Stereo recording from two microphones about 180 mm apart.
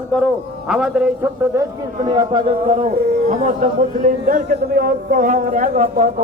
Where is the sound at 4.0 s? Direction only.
50° right (ahead or behind).